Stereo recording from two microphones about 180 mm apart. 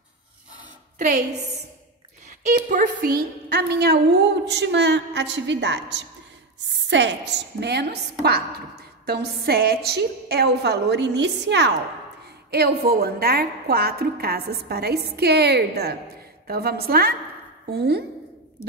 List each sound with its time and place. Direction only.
0.9 s a woman's voice: 45° right (ahead or behind)
2.2 s a woman's voice: 45° right (ahead or behind); by 5.8 s 75° right (ahead or behind)
6.9 s a woman's voice: 80° right; by 18.0 s 65° right (ahead or behind)
18.6 s speech: 15° left (ahead or behind)